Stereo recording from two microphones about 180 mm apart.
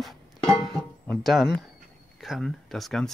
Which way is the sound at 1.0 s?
5° left (ahead or behind).